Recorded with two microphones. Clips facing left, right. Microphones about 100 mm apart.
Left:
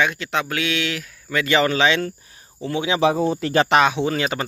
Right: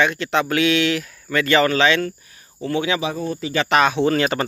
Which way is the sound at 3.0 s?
80° left.